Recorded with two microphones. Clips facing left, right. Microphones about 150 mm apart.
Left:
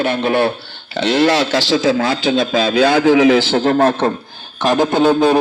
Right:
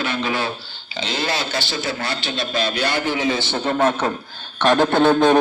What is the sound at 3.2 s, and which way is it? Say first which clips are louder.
Speech: left 10 dB; 90° left.